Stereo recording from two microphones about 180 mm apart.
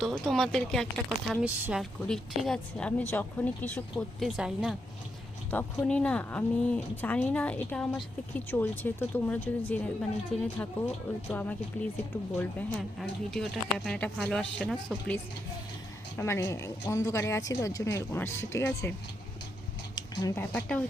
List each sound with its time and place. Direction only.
0.0 s a woman's voice: 5° left (ahead or behind)
5.5 s a woman's voice: 10° left (ahead or behind)
11.3 s a woman's voice: 10° left (ahead or behind)
20.0 s speech: 15° left (ahead or behind)